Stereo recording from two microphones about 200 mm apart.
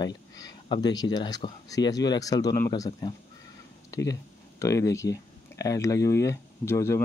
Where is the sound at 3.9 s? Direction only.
15° left (ahead or behind).